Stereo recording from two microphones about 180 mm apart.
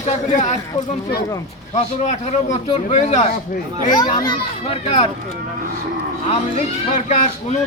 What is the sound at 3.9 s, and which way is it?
Speech, 25° left (ahead or behind).